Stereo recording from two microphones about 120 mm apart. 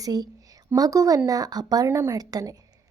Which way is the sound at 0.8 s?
30° right (ahead or behind).